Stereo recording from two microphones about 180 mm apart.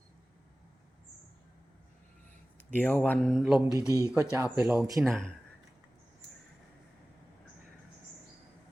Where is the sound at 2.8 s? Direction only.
10° left (ahead or behind).